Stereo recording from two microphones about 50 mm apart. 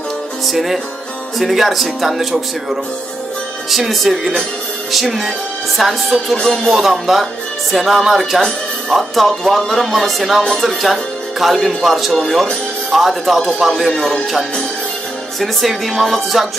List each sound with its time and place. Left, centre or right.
0.5 s speech: centre
8.4 s music: centre
8.9 s speech: centre
15.4 s speech: centre